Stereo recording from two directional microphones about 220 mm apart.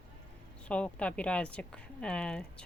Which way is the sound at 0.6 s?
5° left (ahead or behind).